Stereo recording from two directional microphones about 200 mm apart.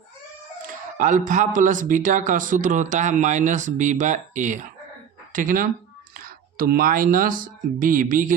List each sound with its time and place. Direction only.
0.9 s a man's voice: 40° right (ahead or behind)